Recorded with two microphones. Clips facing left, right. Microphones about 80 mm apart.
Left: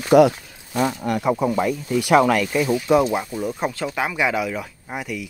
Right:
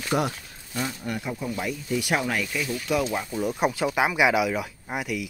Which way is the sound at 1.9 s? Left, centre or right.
Left.